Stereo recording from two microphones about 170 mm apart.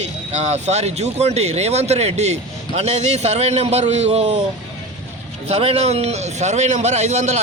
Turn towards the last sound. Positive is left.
turn(degrees=-45)  # may be behind; listen again after turning